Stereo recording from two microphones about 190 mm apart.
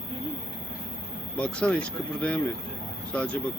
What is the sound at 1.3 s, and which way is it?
Speech, 5° left (ahead or behind).